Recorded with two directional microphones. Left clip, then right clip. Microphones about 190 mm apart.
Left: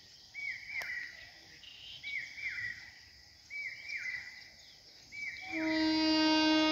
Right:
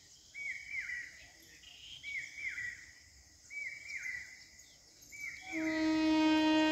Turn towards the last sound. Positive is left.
turn(degrees=-5)  # may be behind; listen again after turning